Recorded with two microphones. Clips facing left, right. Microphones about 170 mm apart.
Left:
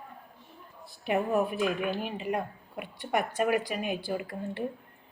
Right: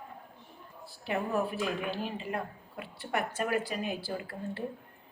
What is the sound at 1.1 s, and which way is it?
A woman's voice, 15° left (ahead or behind).